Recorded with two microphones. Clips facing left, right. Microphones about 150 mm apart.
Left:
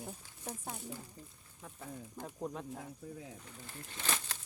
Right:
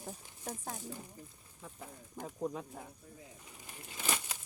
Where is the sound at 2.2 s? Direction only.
5° right (ahead or behind).